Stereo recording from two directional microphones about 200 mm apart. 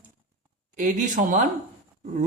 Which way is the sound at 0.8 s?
40° right (ahead or behind).